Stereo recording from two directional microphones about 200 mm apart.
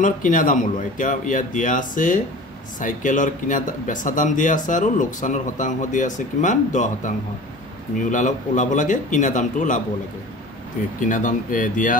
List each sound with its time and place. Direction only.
0.0 s speech: 40° left (ahead or behind)
11.0 s speech: 40° left (ahead or behind)